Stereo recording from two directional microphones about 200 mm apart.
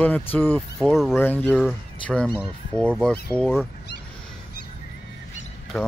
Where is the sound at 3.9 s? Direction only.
60° left (ahead or behind).